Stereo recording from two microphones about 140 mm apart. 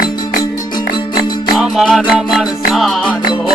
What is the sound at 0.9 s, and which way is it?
Music, 30° left (ahead or behind).